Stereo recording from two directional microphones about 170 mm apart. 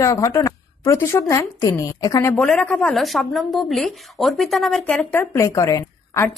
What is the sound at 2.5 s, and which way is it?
A woman's voice, 5° left (ahead or behind).